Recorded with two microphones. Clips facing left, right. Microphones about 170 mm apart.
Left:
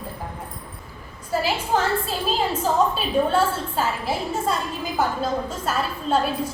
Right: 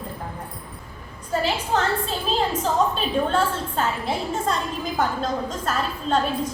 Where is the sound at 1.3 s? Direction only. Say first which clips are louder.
Left 1 dB; 5° left (ahead or behind).